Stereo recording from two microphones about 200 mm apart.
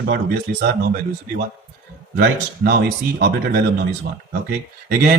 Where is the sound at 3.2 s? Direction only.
50° right (ahead or behind).